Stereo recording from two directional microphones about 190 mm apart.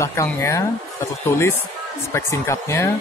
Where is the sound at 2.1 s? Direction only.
15° left (ahead or behind).